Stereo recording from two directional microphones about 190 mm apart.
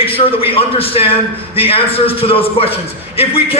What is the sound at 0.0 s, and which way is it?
A man's voice, 30° left (ahead or behind).